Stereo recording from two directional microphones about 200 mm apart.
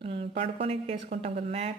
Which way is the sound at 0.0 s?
30° right (ahead or behind).